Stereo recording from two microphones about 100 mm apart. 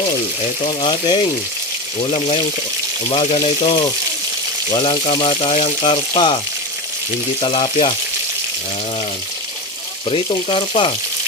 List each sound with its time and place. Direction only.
0.6 s speech: 60° left (ahead or behind)
3.1 s speech: 70° left (ahead or behind)
7.4 s speech: 55° left (ahead or behind)
10.1 s speech: 65° left (ahead or behind)